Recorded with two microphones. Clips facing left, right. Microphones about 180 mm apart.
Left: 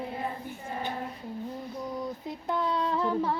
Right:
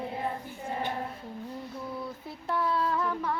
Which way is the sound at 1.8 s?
15° left (ahead or behind).